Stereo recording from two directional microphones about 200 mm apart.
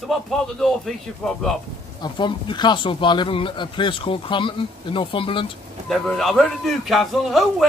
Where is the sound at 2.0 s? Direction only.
20° left (ahead or behind).